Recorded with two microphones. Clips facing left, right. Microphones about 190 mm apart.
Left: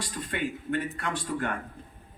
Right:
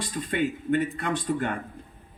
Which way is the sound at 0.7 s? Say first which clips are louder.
Right 5 dB; 20° right (ahead or behind).